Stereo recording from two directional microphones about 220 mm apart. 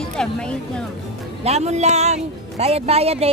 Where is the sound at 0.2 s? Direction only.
5° left (ahead or behind).